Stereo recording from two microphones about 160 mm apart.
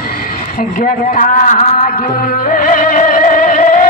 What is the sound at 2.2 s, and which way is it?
Music, 60° left (ahead or behind).